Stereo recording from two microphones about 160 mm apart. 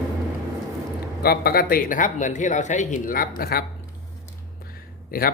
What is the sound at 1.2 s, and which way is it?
Speech, 70° left (ahead or behind).